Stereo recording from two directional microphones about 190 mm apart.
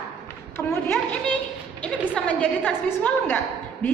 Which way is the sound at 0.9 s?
5° left (ahead or behind).